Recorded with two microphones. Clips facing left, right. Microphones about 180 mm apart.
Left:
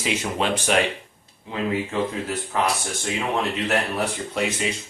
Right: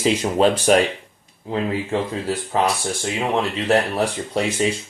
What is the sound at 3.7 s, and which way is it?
Speech, 35° right (ahead or behind).